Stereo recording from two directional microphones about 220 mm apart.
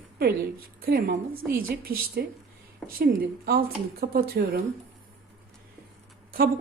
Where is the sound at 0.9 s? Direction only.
45° right (ahead or behind).